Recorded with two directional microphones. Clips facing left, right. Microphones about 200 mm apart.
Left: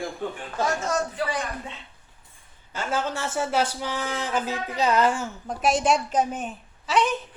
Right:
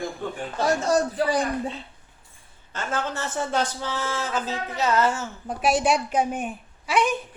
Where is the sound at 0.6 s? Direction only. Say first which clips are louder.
Right 4 dB; 35° right (ahead or behind).